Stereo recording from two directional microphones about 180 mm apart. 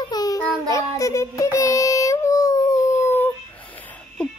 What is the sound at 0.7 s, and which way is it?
Child singing, 15° left (ahead or behind).